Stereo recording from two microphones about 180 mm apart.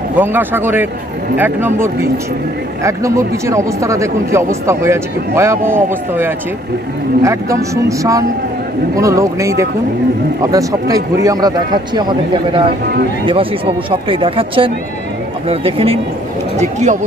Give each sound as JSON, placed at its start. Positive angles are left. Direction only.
{"t": 0.2, "sound": "a man's voice", "side_deg": -10}